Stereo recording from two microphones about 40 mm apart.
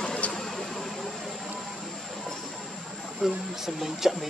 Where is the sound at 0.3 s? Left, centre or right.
Centre.